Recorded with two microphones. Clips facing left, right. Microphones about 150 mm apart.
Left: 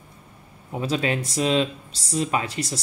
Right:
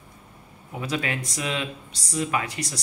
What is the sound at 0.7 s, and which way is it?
Speech, 30° left (ahead or behind).